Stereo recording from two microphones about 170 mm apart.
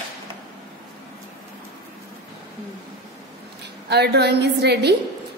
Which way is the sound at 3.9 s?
75° right (ahead or behind).